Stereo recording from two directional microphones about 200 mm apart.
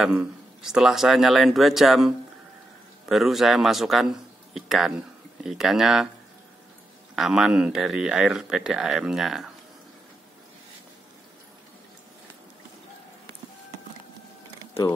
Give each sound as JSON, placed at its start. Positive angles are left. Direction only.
{"t": 0.0, "sound": "speech", "side_deg": -5}
{"t": 7.2, "sound": "speech", "side_deg": 0}